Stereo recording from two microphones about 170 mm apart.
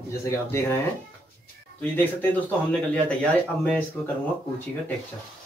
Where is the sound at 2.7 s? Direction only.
5° left (ahead or behind).